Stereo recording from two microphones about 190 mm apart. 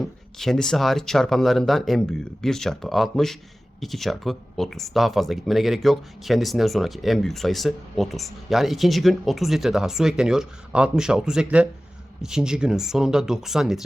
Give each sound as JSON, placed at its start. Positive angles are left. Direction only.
{"t": 0.0, "sound": "speech", "side_deg": 0}